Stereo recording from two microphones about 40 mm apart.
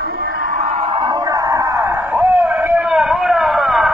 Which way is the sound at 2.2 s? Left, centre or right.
Right.